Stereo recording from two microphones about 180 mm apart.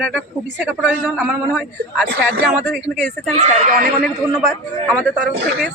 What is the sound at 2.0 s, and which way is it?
Speech, 60° right (ahead or behind).